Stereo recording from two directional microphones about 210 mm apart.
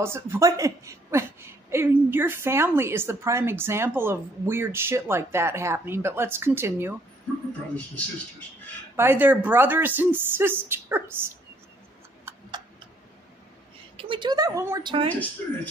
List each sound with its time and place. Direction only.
0.0 s a woman's voice: 10° right (ahead or behind)
8.9 s a woman's voice: 10° right (ahead or behind)
12.3 s a sound: 20° right (ahead or behind)
13.9 s speech: 25° right (ahead or behind)
15.0 s speech: 5° left (ahead or behind)